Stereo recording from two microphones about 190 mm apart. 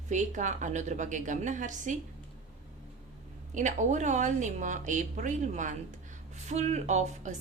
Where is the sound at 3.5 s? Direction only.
40° right (ahead or behind).